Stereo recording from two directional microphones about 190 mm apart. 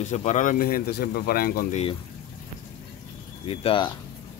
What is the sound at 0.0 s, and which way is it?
Speech, 40° left (ahead or behind).